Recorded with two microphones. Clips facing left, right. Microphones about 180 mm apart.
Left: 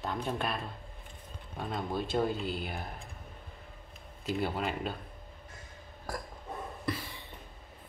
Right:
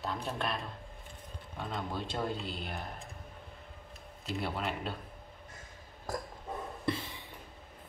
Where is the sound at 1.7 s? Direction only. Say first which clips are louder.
Left 5 dB; 5° left (ahead or behind).